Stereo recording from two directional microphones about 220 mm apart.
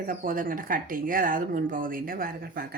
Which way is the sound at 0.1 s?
40° right (ahead or behind).